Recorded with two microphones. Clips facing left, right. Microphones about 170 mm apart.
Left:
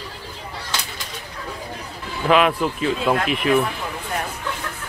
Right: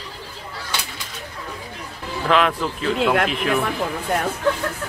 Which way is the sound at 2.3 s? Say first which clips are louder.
Left 2 dB; 5° left (ahead or behind).